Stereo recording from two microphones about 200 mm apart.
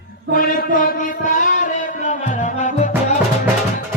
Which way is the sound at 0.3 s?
45° left (ahead or behind).